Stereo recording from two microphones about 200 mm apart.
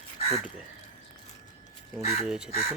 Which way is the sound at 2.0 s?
35° left (ahead or behind).